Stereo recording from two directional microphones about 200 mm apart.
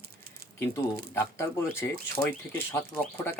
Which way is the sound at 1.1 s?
10° left (ahead or behind).